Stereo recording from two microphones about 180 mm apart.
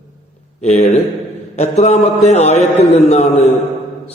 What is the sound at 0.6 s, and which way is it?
A man's voice, 35° left (ahead or behind).